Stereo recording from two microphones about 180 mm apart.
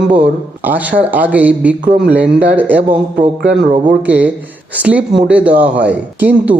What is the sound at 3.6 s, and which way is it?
Speech, 45° right (ahead or behind).